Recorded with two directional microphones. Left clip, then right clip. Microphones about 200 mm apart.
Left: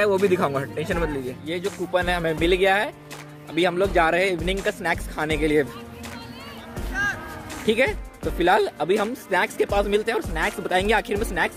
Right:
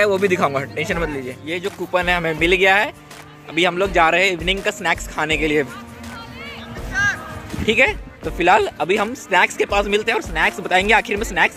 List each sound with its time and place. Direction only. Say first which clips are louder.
0.0 s speech: right 4 dB; 5° left (ahead or behind)
6.9 s music: right 6 dB; 40° left (ahead or behind)
7.6 s speech: right 5 dB; centre (ahead or behind)